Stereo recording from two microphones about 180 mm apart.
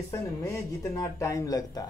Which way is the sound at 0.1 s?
15° left (ahead or behind).